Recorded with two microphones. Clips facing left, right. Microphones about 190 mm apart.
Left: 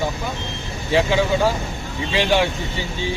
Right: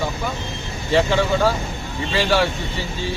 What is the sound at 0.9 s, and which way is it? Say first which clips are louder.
Speech: even; 10° left (ahead or behind).